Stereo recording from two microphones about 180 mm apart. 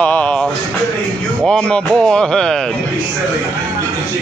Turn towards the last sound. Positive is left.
turn(degrees=5)  # may be behind; listen again after turning